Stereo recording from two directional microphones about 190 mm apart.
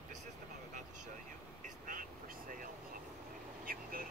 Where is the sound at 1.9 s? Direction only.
45° right (ahead or behind).